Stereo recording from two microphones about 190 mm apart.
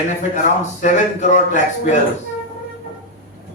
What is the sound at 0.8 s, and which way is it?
Speech, 40° left (ahead or behind).